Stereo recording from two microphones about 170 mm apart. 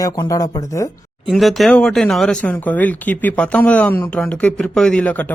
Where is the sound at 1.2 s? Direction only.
Centre (ahead or behind).